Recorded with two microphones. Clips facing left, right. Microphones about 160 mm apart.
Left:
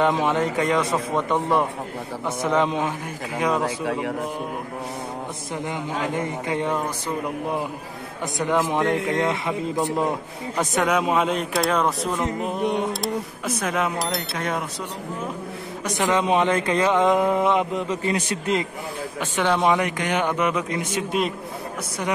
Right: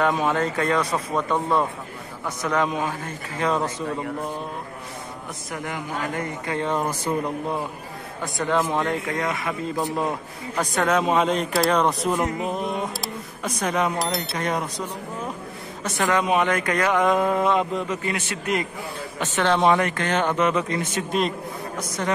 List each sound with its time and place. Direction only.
0.0 s speech: 20° left (ahead or behind)
5.7 s speech: 20° left (ahead or behind)
8.4 s speech: 20° left (ahead or behind)
10.6 s speech: 5° left (ahead or behind)
13.6 s speech: 5° left (ahead or behind)
15.8 s speech: 20° left (ahead or behind)
19.1 s speech: 10° left (ahead or behind)